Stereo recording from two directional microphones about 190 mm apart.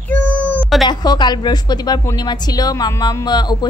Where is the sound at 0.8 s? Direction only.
20° left (ahead or behind).